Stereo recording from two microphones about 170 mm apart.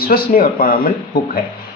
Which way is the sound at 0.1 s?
60° left (ahead or behind).